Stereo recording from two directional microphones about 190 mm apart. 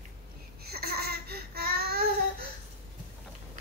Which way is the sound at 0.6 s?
55° right (ahead or behind).